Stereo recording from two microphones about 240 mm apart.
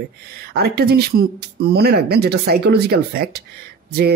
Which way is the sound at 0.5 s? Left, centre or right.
Right.